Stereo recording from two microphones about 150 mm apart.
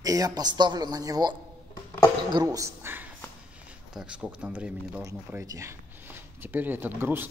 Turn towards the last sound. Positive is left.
turn(degrees=-15)  # may be behind; listen again after turning